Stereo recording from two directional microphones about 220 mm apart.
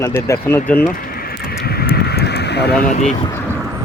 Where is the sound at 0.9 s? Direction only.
40° left (ahead or behind).